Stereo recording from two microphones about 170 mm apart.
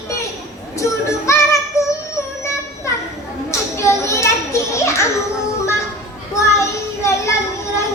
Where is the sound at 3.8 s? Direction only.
15° left (ahead or behind).